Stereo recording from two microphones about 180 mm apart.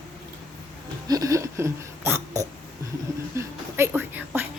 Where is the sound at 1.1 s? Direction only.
20° right (ahead or behind).